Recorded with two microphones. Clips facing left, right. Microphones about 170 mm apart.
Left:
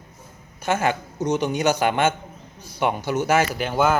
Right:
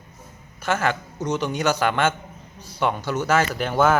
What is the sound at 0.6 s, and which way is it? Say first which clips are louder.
A man's voice: left 1 dB; 15° left (ahead or behind).